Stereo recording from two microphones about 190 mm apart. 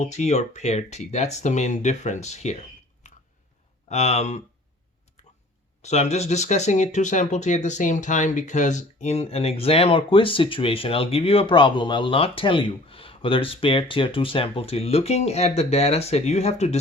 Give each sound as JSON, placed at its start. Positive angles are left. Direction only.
{"t": 0.0, "sound": "speech", "side_deg": 35}
{"t": 5.8, "sound": "speech", "side_deg": 35}